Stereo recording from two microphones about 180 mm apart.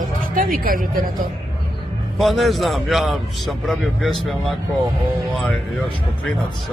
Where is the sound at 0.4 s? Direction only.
50° right (ahead or behind).